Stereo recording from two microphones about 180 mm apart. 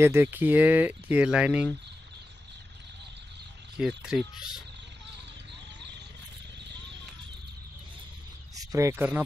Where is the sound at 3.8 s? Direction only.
5° right (ahead or behind).